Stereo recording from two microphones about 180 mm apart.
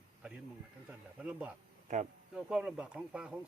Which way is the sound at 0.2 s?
5° right (ahead or behind).